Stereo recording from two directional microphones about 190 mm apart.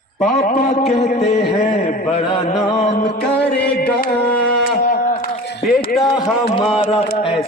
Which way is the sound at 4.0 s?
55° left (ahead or behind).